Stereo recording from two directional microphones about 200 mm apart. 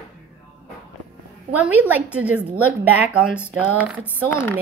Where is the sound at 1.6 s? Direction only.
10° right (ahead or behind).